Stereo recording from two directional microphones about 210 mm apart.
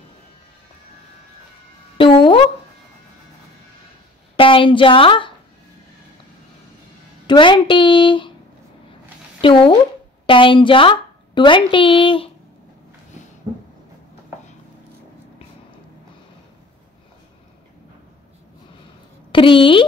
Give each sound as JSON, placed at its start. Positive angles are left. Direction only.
{"t": 2.0, "sound": "a sound", "side_deg": 25}
{"t": 4.4, "sound": "a woman's voice", "side_deg": 25}
{"t": 7.2, "sound": "a woman's voice", "side_deg": 20}
{"t": 9.4, "sound": "a woman's voice", "side_deg": 25}
{"t": 19.3, "sound": "speech", "side_deg": 25}